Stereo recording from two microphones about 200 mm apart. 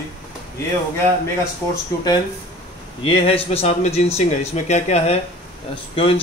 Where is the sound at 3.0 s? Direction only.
25° left (ahead or behind).